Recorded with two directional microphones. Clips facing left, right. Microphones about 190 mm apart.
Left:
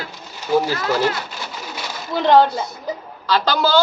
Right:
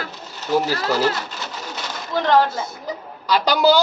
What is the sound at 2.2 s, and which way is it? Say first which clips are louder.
Speech: left 3 dB; 20° left (ahead or behind).